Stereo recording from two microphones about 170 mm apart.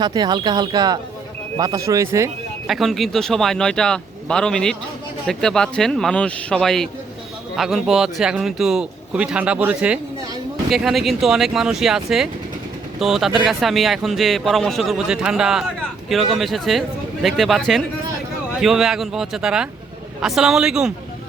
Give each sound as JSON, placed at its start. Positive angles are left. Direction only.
{"t": 0.0, "sound": "speech", "side_deg": -25}
{"t": 2.6, "sound": "speech", "side_deg": 0}